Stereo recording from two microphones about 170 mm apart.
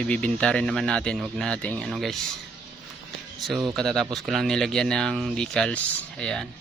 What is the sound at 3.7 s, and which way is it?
Speech, 5° left (ahead or behind).